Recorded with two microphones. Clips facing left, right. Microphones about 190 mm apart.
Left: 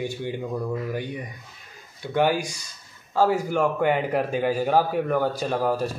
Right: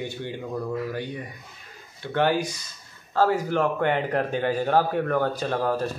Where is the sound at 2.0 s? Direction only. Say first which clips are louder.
Left 1 dB; 10° left (ahead or behind).